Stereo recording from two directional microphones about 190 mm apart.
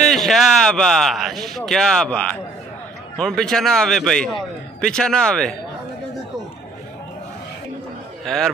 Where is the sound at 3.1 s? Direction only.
5° left (ahead or behind).